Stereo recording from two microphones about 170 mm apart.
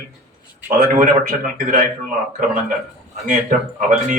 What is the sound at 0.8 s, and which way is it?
Speech, 55° right (ahead or behind).